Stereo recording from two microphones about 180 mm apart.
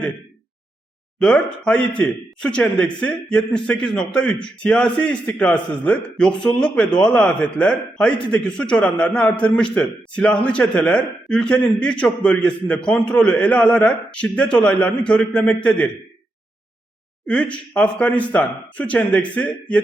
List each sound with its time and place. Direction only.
1.6 s a man's voice: 5° left (ahead or behind)
17.2 s a man's voice: 5° left (ahead or behind)